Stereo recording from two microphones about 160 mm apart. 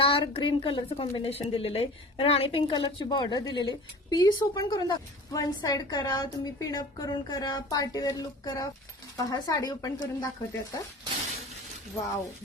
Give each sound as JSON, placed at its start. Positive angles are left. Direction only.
{"t": 0.0, "sound": "a woman's voice", "side_deg": 35}